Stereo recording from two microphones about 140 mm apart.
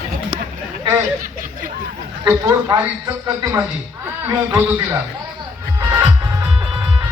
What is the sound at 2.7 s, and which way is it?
Speech, 30° right (ahead or behind).